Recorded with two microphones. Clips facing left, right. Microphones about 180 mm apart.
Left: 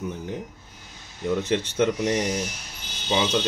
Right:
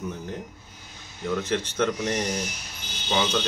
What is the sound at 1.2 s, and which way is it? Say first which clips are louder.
Speech: left 3 dB; 15° left (ahead or behind).